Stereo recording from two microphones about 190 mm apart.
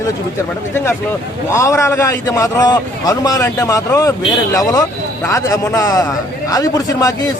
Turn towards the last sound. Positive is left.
turn(degrees=20)  # may be behind; listen again after turning